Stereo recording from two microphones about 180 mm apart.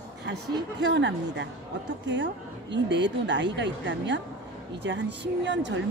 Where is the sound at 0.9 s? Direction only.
80° right.